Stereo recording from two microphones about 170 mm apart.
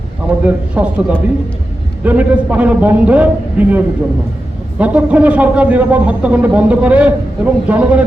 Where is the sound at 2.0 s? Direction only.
10° right (ahead or behind).